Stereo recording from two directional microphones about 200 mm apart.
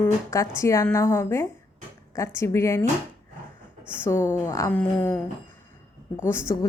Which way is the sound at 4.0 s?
10° left (ahead or behind).